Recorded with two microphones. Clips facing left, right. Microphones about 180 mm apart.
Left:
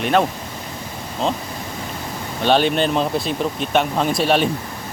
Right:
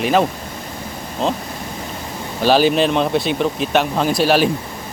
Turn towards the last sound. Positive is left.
turn(degrees=0)  # may be behind; listen again after turning